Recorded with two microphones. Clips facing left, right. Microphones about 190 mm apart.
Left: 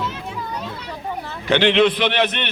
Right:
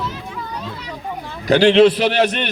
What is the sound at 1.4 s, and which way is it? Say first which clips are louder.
A man's voice: right 5 dB; 35° right (ahead or behind).